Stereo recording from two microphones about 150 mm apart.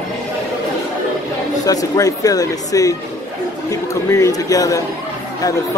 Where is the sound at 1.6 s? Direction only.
25° left (ahead or behind).